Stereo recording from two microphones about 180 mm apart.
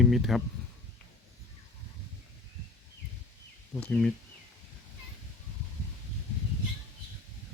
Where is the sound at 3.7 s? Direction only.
5° left (ahead or behind).